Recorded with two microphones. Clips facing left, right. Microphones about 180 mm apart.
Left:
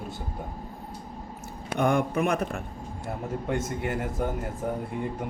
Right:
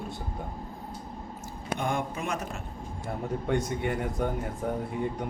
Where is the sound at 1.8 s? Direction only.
60° left (ahead or behind).